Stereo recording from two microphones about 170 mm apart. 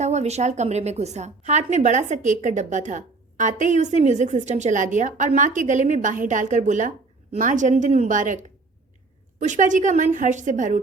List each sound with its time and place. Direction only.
0.0 s a woman's voice: 40° right (ahead or behind)